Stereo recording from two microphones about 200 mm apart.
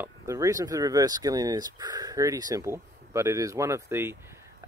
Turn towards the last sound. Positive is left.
turn(degrees=-10)  # may be behind; listen again after turning